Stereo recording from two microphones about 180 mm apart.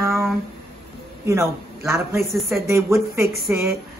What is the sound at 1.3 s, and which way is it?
A woman's voice, 15° right (ahead or behind).